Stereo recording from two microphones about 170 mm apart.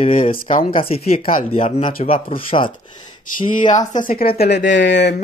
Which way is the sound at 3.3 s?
50° left (ahead or behind).